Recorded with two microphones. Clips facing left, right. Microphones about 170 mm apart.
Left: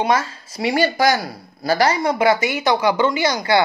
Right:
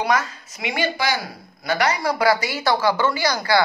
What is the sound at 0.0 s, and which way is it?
Speech, 30° left (ahead or behind).